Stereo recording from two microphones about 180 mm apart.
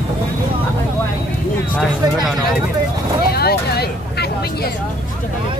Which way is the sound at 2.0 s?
20° right (ahead or behind).